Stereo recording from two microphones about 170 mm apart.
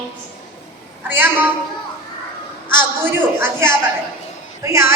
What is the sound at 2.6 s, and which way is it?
A woman's voice, 10° right (ahead or behind).